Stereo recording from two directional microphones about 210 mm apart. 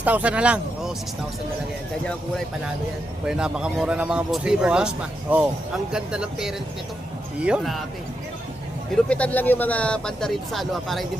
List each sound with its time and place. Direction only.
0.0 s speech: 5° right (ahead or behind)
3.2 s speech: 5° right (ahead or behind)
9.0 s speech: 5° left (ahead or behind)